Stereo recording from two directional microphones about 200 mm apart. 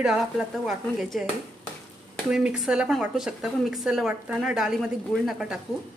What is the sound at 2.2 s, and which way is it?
Speech, 5° right (ahead or behind).